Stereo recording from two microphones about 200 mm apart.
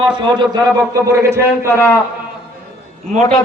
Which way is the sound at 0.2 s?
25° right (ahead or behind).